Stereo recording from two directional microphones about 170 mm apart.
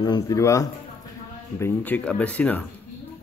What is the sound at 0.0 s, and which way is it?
Speech, 20° left (ahead or behind).